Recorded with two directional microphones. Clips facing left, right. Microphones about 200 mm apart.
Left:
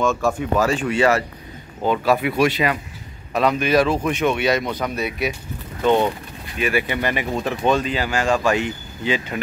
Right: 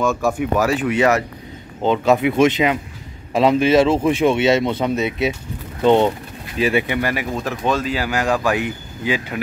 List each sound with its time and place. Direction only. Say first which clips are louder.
0.3 s speech: right 1 dB; 10° right (ahead or behind)
6.9 s speech: right 1 dB; 5° right (ahead or behind)